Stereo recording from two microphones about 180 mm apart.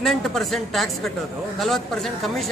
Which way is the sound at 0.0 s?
Centre (ahead or behind).